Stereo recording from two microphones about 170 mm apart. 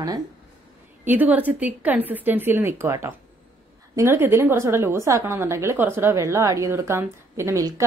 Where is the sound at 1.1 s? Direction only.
10° right (ahead or behind).